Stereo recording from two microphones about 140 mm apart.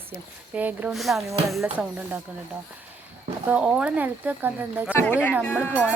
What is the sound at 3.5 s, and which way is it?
Speech, 5° right (ahead or behind).